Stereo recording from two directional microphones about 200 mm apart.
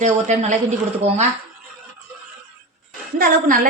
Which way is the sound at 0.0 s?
40° right (ahead or behind).